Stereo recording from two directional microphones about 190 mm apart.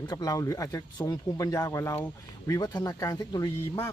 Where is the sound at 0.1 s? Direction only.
20° left (ahead or behind).